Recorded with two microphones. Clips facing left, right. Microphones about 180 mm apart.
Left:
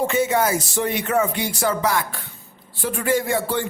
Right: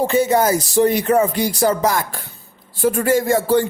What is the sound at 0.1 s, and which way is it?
Speech, 40° right (ahead or behind).